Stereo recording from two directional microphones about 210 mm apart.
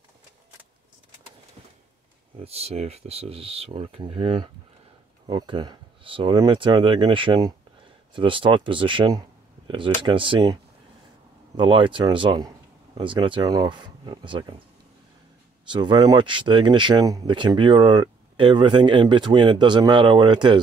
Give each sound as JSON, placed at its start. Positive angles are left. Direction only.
{"t": 2.4, "sound": "speech", "side_deg": -30}
{"t": 15.7, "sound": "speech", "side_deg": -20}